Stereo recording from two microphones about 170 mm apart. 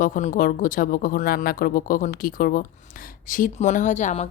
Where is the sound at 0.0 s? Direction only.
50° left (ahead or behind).